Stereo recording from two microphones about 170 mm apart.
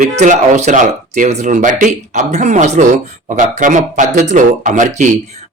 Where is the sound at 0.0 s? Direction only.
45° right (ahead or behind).